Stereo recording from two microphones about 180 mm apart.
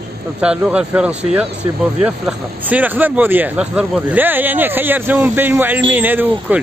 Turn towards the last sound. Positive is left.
turn(degrees=-10)  # may be behind; listen again after turning